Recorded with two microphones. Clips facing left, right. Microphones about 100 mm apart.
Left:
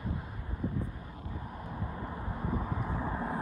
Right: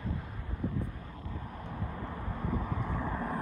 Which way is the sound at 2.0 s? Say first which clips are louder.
Even; 15° left (ahead or behind).